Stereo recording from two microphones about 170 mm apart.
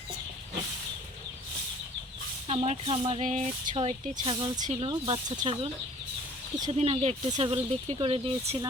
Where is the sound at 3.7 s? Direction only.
30° right (ahead or behind).